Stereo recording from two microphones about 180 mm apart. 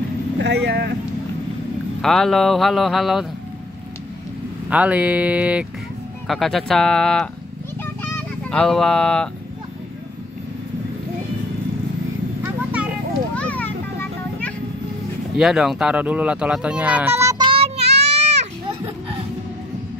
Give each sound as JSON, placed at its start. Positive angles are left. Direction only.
{"t": 0.4, "sound": "speech", "side_deg": -75}
{"t": 2.0, "sound": "speech", "side_deg": 0}
{"t": 4.6, "sound": "speech", "side_deg": -10}
{"t": 7.8, "sound": "fowl", "side_deg": 5}
{"t": 12.4, "sound": "vehicle", "side_deg": -5}
{"t": 13.3, "sound": "a sound", "side_deg": 10}
{"t": 15.3, "sound": "speech", "side_deg": -5}
{"t": 17.5, "sound": "child singing", "side_deg": -35}
{"t": 18.1, "sound": "a sound", "side_deg": -35}